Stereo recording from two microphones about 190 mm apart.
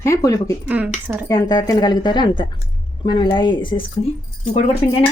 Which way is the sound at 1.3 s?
20° left (ahead or behind).